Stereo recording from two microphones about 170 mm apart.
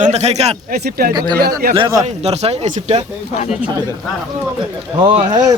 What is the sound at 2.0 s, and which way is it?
Speech, 40° right (ahead or behind).